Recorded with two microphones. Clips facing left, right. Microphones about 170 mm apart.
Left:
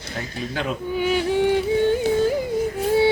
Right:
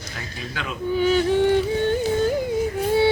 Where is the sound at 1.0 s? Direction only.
10° left (ahead or behind).